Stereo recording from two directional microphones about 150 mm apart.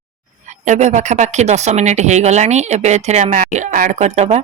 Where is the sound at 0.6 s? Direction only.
55° right (ahead or behind).